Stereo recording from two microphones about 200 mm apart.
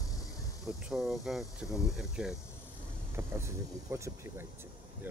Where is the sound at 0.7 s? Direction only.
Centre (ahead or behind).